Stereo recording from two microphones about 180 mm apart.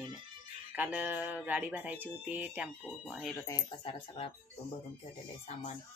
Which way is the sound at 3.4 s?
20° left (ahead or behind).